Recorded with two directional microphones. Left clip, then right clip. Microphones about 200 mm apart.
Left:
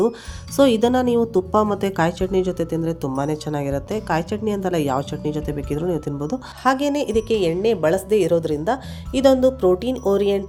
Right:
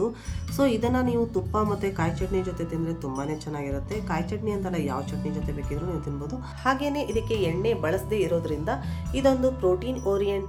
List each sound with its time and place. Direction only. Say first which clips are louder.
0.5 s a woman's voice: left 8 dB; 45° left (ahead or behind)